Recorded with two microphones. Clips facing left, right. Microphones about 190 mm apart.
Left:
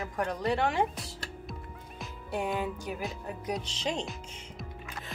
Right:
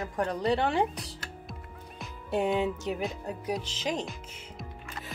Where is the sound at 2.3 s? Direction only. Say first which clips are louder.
Right 5 dB; 20° right (ahead or behind).